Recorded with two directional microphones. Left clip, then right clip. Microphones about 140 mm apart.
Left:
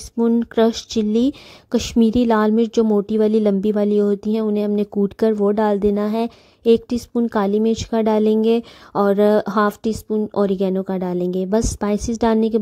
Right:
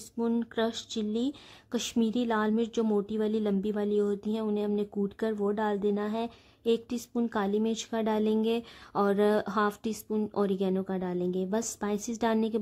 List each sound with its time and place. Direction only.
0.2 s speech: 35° left (ahead or behind)